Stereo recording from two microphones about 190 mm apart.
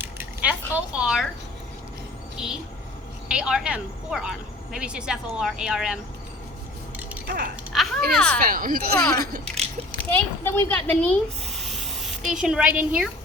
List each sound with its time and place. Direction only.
0.0 s a sound: 10° right (ahead or behind)
2.4 s a woman's voice: 5° right (ahead or behind)
7.3 s speech: 50° right (ahead or behind)
7.7 s a child's voice: centre (ahead or behind)
8.4 s speech: 50° right (ahead or behind)
10.2 s a woman's voice: 10° left (ahead or behind)
11.5 s a sound: centre (ahead or behind)